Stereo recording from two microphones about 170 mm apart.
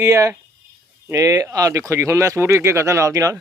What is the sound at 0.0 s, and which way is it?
Speech, 20° right (ahead or behind).